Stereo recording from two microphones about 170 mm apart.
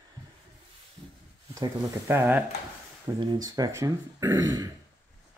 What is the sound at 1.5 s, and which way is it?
Speech, 15° right (ahead or behind).